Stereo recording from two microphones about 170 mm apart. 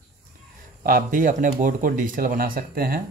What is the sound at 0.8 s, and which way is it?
Speech, 55° right (ahead or behind).